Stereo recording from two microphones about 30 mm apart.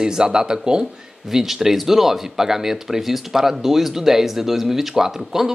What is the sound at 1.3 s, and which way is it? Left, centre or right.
Speech, centre.